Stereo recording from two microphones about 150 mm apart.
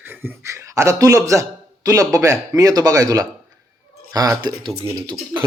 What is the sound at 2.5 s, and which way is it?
Speech, 25° right (ahead or behind).